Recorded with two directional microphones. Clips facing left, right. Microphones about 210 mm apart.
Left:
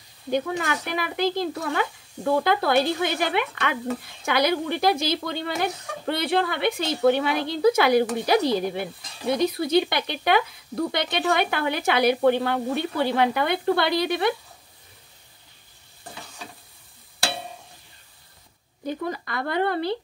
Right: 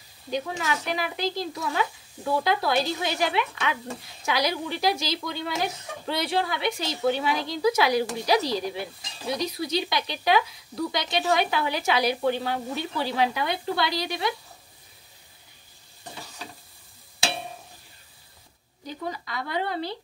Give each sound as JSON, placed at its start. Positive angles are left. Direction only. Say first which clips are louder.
{"t": 0.3, "sound": "speech", "louder": "left 4 dB", "side_deg": 55}
{"t": 18.9, "sound": "speech", "louder": "left 5 dB", "side_deg": 55}